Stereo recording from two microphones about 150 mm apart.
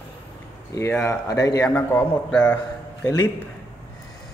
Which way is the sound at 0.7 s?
20° left (ahead or behind).